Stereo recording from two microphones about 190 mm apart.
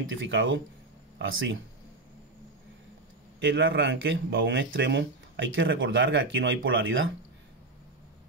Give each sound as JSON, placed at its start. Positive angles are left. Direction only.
{"t": 0.0, "sound": "speech", "side_deg": -75}
{"t": 3.3, "sound": "speech", "side_deg": -70}